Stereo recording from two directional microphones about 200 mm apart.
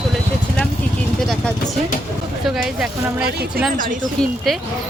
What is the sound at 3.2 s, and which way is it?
Speech, 55° right (ahead or behind).